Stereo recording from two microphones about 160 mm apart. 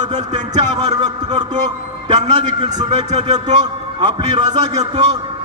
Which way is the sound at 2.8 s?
25° right (ahead or behind).